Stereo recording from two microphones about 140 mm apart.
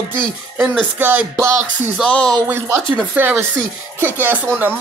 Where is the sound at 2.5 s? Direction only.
20° right (ahead or behind).